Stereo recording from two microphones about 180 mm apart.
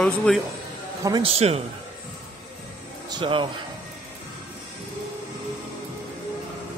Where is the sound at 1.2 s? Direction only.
35° right (ahead or behind).